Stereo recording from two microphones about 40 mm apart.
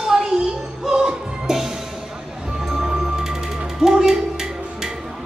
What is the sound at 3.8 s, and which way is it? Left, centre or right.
Music, centre.